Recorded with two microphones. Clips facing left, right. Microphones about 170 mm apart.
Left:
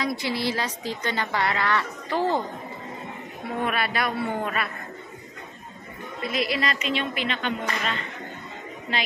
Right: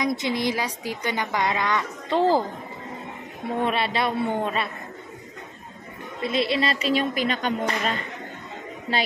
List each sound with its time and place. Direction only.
0.0 s a woman's voice: 20° right (ahead or behind)
3.6 s a man's voice: 25° right (ahead or behind)
6.2 s speech: 30° right (ahead or behind)